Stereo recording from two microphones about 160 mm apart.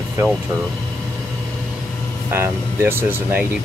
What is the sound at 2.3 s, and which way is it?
Speech, 15° right (ahead or behind).